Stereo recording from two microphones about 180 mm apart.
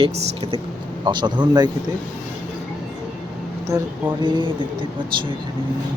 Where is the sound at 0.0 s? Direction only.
30° right (ahead or behind).